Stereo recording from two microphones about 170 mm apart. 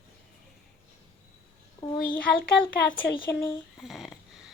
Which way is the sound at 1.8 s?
15° left (ahead or behind).